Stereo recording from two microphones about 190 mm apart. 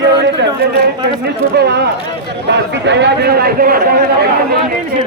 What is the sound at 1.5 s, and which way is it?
Speech, 60° right (ahead or behind).